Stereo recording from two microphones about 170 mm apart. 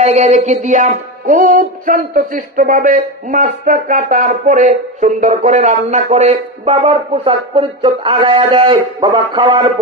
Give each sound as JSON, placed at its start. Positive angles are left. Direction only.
{"t": 0.0, "sound": "music", "side_deg": -40}